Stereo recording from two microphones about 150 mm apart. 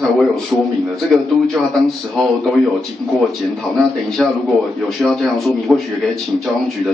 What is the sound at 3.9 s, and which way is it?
Speech, 5° left (ahead or behind).